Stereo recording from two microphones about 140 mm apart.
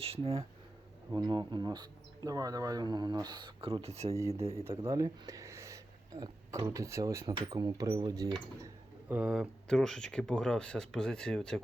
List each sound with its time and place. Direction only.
0.0 s speech: 45° right (ahead or behind)
1.1 s speech: 30° right (ahead or behind)
4.5 s speech: 20° right (ahead or behind)
8.6 s speech: 10° right (ahead or behind)